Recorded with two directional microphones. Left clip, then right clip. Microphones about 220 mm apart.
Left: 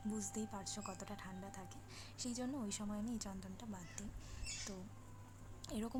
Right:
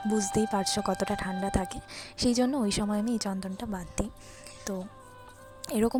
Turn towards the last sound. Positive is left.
turn(degrees=-35)  # may be behind; listen again after turning